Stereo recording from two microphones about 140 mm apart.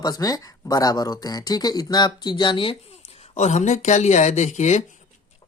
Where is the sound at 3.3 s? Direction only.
55° left (ahead or behind).